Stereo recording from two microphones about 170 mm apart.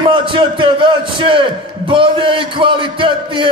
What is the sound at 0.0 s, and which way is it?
A man's voice, 30° right (ahead or behind).